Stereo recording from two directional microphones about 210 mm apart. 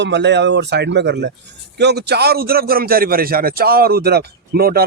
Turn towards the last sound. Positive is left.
turn(degrees=-45)  # may be behind; listen again after turning